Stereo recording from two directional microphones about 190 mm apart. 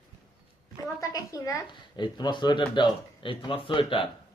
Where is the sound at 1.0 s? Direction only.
20° left (ahead or behind).